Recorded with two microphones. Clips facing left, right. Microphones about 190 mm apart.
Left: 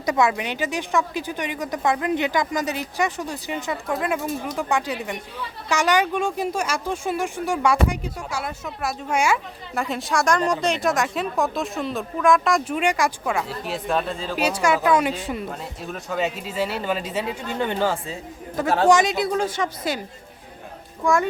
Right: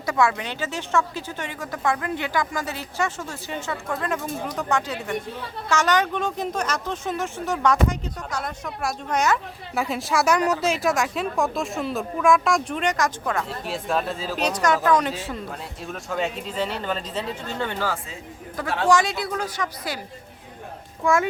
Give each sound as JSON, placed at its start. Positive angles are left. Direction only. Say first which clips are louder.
{"t": 0.0, "sound": "speech", "louder": "left 1 dB", "side_deg": 20}
{"t": 9.7, "sound": "speech", "louder": "even", "side_deg": 0}
{"t": 14.3, "sound": "speech", "louder": "left 1 dB", "side_deg": 10}
{"t": 15.4, "sound": "speech", "louder": "left 2 dB", "side_deg": 0}
{"t": 21.0, "sound": "speech", "louder": "even", "side_deg": 0}